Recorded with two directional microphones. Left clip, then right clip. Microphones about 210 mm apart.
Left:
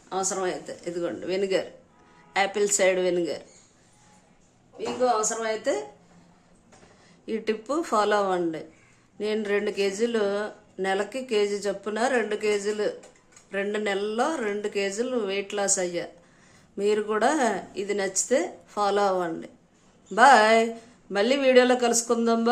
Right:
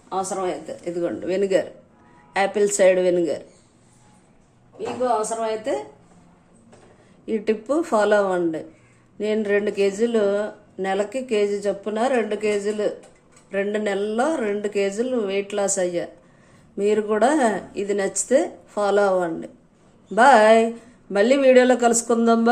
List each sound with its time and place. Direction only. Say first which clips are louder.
0.1 s speech: right 3 dB; 10° left (ahead or behind)
4.8 s speech: right 2 dB; 25° left (ahead or behind)
7.3 s speech: right 5 dB; centre (ahead or behind)